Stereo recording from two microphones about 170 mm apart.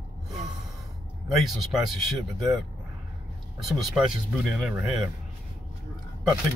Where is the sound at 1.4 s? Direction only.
Centre (ahead or behind).